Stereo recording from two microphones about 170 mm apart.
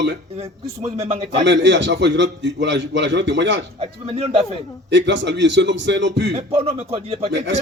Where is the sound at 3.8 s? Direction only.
35° right (ahead or behind).